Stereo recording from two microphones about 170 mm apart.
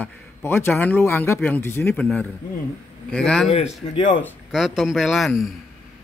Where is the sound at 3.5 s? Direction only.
40° left (ahead or behind).